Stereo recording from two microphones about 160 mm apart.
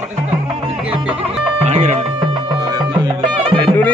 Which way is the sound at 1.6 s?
45° right (ahead or behind).